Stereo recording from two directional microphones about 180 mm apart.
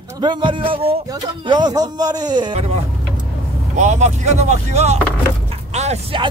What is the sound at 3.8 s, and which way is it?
Speech, 40° right (ahead or behind).